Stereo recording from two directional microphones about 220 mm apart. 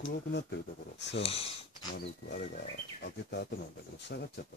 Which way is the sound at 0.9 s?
55° left (ahead or behind).